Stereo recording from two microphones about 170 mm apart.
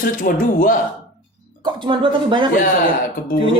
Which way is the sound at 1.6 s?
30° right (ahead or behind).